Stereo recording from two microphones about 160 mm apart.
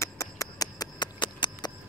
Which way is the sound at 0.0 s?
20° left (ahead or behind).